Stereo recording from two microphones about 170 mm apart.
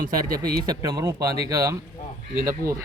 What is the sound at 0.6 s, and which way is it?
Speech, 20° right (ahead or behind).